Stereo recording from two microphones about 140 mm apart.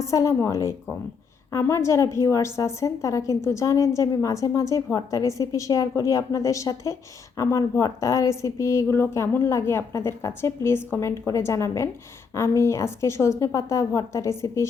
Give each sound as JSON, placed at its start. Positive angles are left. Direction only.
{"t": 0.0, "sound": "a woman's voice", "side_deg": 20}